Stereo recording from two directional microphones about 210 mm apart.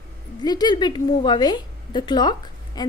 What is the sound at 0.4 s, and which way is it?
A woman's voice, 20° left (ahead or behind).